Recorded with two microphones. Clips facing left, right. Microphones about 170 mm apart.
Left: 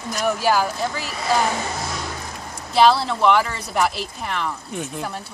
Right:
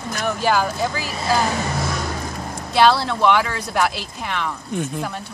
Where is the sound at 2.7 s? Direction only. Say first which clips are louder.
Even; centre (ahead or behind).